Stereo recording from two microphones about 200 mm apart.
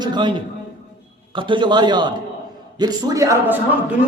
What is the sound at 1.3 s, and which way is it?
A man's voice, 25° right (ahead or behind).